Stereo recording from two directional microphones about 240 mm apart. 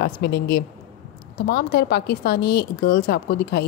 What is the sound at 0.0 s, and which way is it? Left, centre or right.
A woman's voice, left.